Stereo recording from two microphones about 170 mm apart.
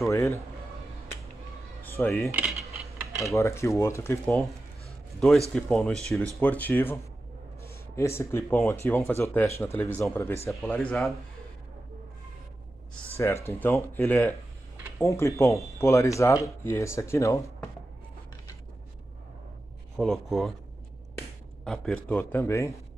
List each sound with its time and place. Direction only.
0.1 s speech: 15° left (ahead or behind)
2.0 s speech: 10° left (ahead or behind)
3.3 s speech: 15° left (ahead or behind)
5.5 s speech: 5° left (ahead or behind)
10.5 s speech: 5° left (ahead or behind)
13.2 s speech: 15° left (ahead or behind)
20.0 s speech: centre (ahead or behind)
21.6 s speech: 5° left (ahead or behind)